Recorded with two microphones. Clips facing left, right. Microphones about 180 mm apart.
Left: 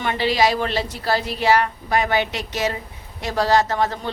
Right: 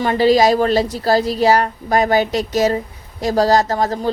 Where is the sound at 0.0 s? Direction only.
40° right (ahead or behind).